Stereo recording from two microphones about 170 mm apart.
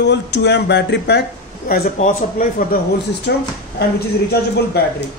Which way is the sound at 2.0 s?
50° left (ahead or behind).